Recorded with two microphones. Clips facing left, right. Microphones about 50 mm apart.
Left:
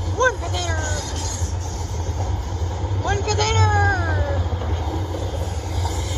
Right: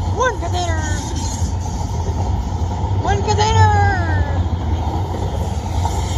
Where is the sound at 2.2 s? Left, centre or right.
Centre.